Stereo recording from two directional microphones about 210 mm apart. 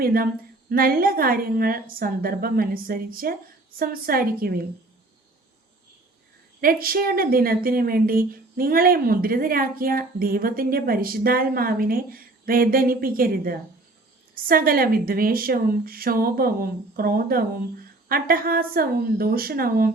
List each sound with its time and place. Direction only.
0.0 s a woman's voice: 45° right (ahead or behind)
6.6 s a woman's voice: 45° right (ahead or behind)